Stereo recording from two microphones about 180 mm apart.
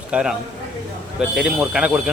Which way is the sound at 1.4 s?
5° right (ahead or behind).